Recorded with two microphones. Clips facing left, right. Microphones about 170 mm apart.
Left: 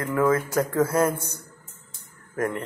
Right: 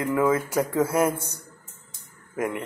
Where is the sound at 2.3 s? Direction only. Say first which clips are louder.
Left 1 dB; 10° right (ahead or behind).